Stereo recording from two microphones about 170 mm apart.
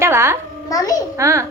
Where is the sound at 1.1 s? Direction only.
15° right (ahead or behind).